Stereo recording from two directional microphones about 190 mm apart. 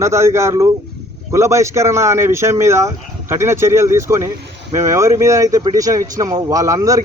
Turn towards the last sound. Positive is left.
turn(degrees=-15)  # may be behind; listen again after turning